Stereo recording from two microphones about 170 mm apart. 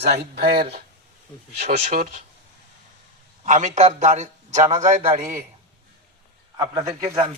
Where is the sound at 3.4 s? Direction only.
45° right (ahead or behind).